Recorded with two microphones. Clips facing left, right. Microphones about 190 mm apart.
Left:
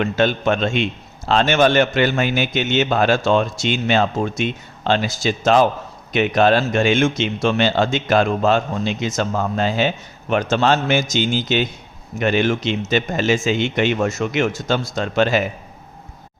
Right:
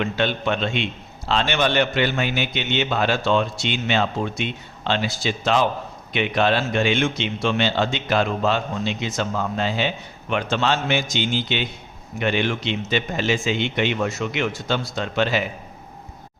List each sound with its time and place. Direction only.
0.0 s a man's voice: 45° left (ahead or behind)